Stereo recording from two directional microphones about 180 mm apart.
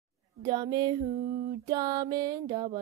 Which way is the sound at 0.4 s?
25° right (ahead or behind).